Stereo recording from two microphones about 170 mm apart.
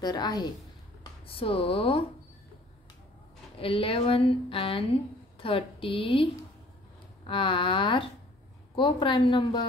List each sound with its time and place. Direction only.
0.0 s a woman's voice: 25° left (ahead or behind)
3.5 s speech: 30° left (ahead or behind)
7.2 s a woman's voice: 30° left (ahead or behind)